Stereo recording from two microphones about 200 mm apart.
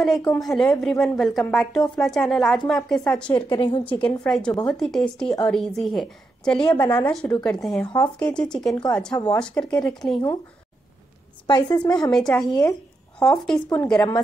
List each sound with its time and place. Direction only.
0.0 s a woman's voice: 5° left (ahead or behind)
3.3 s a woman's voice: 25° left (ahead or behind)
4.0 s a woman's voice: 5° left (ahead or behind)
6.6 s a woman's voice: 20° left (ahead or behind)
7.1 s a woman's voice: 5° left (ahead or behind)
9.1 s a woman's voice: 20° left (ahead or behind)
9.4 s a woman's voice: 5° left (ahead or behind)
11.4 s a woman's voice: 20° left (ahead or behind)
12.1 s a woman's voice: centre (ahead or behind)
12.4 s speech: 20° left (ahead or behind)
13.2 s speech: 5° left (ahead or behind)